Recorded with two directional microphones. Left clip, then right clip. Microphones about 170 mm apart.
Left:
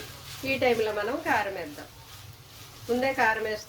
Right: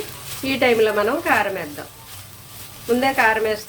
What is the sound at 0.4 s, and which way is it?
Speech, 30° right (ahead or behind).